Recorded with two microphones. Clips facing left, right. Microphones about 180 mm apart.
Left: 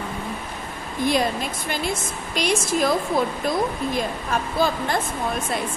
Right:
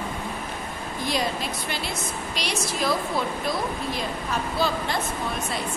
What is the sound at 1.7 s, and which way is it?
A woman's voice, 50° left (ahead or behind).